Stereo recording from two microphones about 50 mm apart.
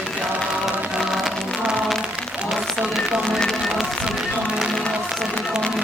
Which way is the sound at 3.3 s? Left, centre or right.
Centre.